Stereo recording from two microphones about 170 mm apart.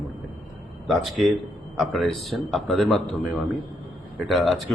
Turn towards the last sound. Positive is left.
turn(degrees=0)  # may be behind; listen again after turning